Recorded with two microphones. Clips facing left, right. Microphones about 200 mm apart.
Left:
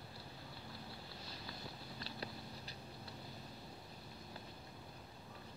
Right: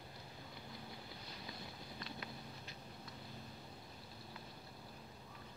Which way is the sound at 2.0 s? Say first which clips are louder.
Left 2 dB; 35° left (ahead or behind).